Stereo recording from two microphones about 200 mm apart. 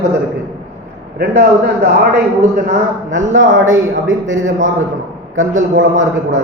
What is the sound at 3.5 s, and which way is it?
Speech, 70° right (ahead or behind).